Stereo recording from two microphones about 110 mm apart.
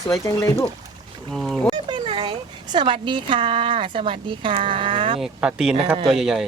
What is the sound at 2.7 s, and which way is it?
Speech, 50° right (ahead or behind).